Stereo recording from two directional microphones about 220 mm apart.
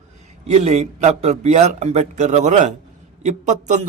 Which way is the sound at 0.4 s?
30° right (ahead or behind).